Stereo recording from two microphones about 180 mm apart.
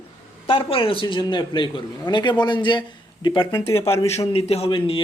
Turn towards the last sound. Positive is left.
turn(degrees=30)  # may be behind; listen again after turning